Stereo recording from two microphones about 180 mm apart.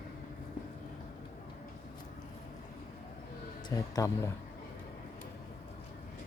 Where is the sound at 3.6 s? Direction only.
20° left (ahead or behind).